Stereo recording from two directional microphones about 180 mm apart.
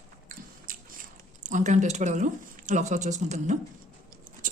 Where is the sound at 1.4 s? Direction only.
45° right (ahead or behind).